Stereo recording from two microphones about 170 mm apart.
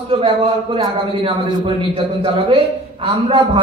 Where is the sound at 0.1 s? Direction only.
35° right (ahead or behind).